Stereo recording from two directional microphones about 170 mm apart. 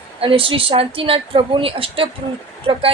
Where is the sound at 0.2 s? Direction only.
30° right (ahead or behind).